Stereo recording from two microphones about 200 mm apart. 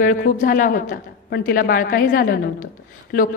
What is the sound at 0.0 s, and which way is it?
A woman's voice, 40° left (ahead or behind).